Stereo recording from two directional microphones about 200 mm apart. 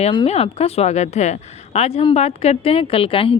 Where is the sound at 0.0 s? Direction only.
30° left (ahead or behind).